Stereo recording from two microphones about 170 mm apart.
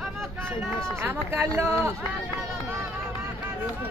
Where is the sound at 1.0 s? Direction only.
15° right (ahead or behind).